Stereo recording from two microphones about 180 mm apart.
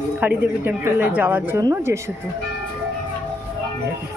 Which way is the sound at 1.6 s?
20° right (ahead or behind).